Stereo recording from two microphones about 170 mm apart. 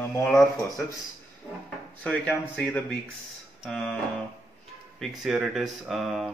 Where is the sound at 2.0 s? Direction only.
10° left (ahead or behind).